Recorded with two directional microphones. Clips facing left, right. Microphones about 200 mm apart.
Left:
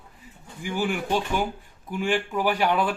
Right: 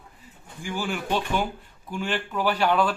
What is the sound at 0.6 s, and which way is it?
Speech, 15° left (ahead or behind).